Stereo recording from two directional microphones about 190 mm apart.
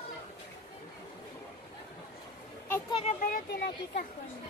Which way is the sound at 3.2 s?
50° left (ahead or behind).